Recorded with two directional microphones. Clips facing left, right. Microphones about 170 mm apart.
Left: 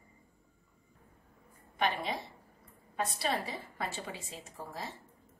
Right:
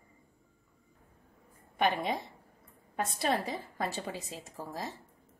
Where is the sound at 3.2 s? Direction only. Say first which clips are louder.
Right 7 dB; 45° right (ahead or behind).